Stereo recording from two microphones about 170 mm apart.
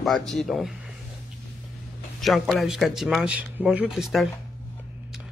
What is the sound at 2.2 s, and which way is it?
A man's voice, centre (ahead or behind).